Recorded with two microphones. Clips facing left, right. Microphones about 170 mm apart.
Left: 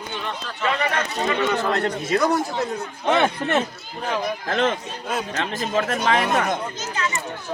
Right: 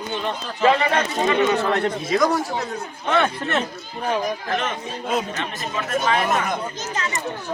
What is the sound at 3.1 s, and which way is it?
Speech, 20° left (ahead or behind).